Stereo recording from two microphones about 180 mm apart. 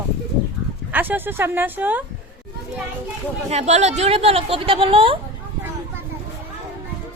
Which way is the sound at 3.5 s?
40° right (ahead or behind).